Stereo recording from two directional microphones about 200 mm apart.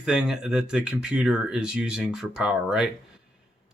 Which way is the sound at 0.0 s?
5° right (ahead or behind).